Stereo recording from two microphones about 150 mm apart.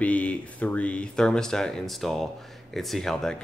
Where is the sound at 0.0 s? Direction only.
10° left (ahead or behind).